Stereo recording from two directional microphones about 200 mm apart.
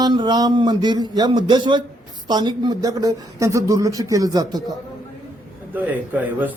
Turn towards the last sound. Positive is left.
turn(degrees=-10)  # may be behind; listen again after turning